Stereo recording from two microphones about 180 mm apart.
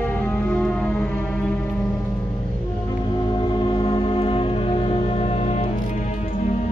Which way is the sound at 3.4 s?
30° left (ahead or behind).